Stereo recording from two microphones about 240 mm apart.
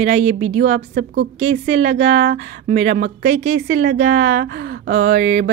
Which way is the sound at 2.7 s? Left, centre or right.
Right.